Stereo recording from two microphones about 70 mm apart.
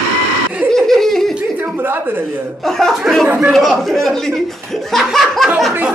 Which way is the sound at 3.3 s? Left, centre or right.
Centre.